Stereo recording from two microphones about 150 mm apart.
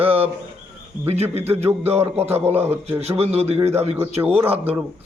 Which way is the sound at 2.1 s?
45° right (ahead or behind).